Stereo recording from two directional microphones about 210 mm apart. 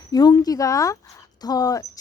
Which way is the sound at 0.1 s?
20° left (ahead or behind).